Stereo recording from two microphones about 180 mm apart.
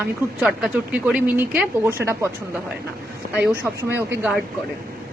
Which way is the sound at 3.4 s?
15° right (ahead or behind).